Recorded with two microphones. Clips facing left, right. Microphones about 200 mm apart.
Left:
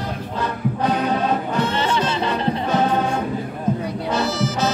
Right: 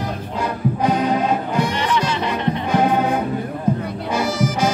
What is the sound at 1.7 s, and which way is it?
Music, 30° left (ahead or behind).